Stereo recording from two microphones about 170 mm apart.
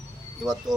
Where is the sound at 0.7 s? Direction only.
20° right (ahead or behind).